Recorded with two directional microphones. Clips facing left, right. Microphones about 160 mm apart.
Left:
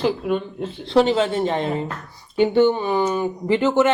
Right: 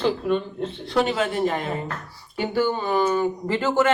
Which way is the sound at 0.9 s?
30° left (ahead or behind).